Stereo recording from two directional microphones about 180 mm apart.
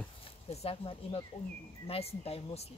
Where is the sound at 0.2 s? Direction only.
35° left (ahead or behind).